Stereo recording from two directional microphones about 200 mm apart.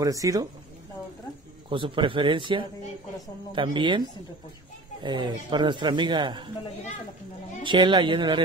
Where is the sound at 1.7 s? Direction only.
25° right (ahead or behind).